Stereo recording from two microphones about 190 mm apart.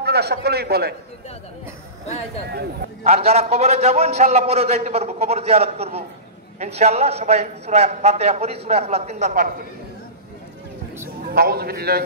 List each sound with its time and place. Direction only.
0.0 s a man's voice: 60° right (ahead or behind)
3.0 s a man's voice: 35° right (ahead or behind)
11.3 s a man's voice: 55° right (ahead or behind)